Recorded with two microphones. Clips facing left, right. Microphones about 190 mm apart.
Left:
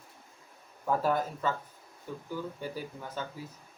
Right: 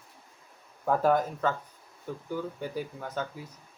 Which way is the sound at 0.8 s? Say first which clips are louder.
Right 4 dB; 50° right (ahead or behind).